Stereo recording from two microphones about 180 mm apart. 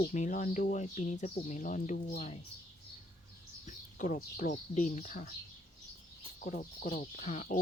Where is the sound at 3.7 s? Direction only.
45° left (ahead or behind).